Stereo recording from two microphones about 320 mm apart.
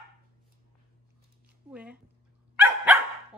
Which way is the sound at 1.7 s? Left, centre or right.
Centre.